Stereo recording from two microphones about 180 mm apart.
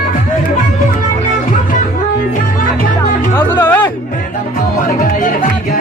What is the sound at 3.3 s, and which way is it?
Music, 10° left (ahead or behind).